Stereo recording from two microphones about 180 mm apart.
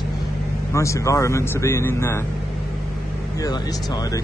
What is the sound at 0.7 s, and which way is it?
A man's voice, 15° left (ahead or behind).